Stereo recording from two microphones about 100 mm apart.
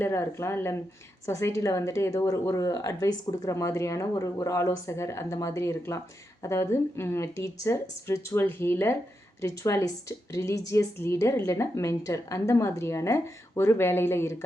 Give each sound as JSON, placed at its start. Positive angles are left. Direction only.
{"t": 0.0, "sound": "a woman's voice", "side_deg": 25}